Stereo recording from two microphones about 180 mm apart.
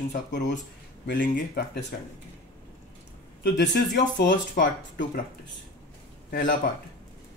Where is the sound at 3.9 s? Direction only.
80° left.